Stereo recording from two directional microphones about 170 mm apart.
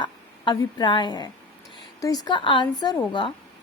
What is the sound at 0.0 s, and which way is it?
A woman's voice, 25° left (ahead or behind).